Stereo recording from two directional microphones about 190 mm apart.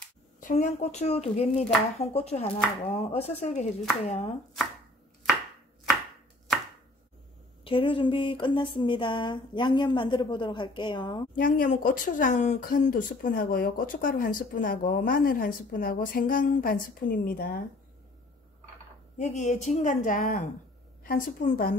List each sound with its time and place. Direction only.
0.4 s speech: 40° left (ahead or behind)
1.5 s speech: 5° left (ahead or behind)
2.1 s speech: 35° left (ahead or behind)
7.6 s speech: 25° left (ahead or behind)
11.3 s speech: 50° left (ahead or behind)
19.1 s speech: 40° left (ahead or behind)